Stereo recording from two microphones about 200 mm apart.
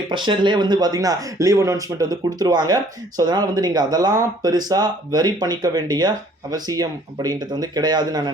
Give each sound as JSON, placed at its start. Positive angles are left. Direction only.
{"t": 0.1, "sound": "speech", "side_deg": -25}